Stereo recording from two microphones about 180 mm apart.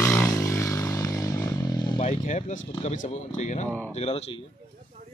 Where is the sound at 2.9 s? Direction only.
40° left (ahead or behind).